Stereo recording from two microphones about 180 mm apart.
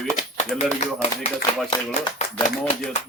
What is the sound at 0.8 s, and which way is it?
Speech, 40° left (ahead or behind).